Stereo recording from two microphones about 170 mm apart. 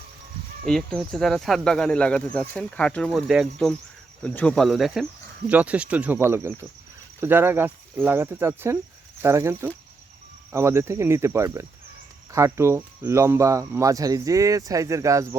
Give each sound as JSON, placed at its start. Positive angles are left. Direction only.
{"t": 0.6, "sound": "speech", "side_deg": 0}